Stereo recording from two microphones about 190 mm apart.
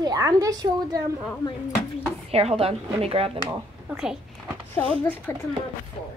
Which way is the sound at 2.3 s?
30° right (ahead or behind).